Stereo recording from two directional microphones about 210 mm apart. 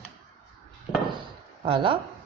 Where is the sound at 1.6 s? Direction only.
25° right (ahead or behind).